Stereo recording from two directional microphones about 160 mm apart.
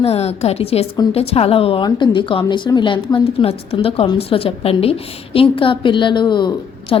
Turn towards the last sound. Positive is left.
turn(degrees=30)  # may be behind; listen again after turning